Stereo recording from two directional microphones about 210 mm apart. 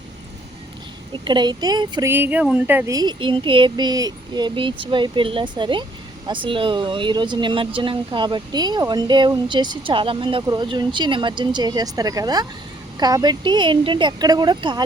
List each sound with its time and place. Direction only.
1.1 s speech: 20° right (ahead or behind)